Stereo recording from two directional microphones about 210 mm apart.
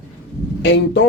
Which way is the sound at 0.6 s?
55° left (ahead or behind).